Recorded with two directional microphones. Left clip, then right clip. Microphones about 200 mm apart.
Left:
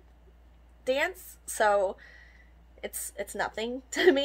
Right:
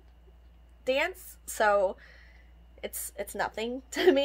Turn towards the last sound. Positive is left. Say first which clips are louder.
# left 1 dB
turn(degrees=-5)  # may be behind; listen again after turning